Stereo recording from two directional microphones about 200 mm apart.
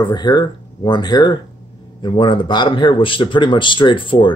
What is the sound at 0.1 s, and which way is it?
Speech, 20° left (ahead or behind).